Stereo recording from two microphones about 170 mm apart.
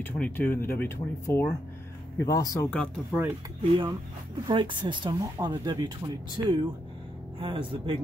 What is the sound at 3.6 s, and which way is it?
Speech, 30° right (ahead or behind).